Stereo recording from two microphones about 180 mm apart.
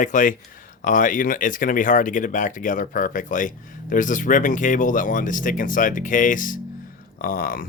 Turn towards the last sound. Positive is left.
turn(degrees=50)  # may be behind; listen again after turning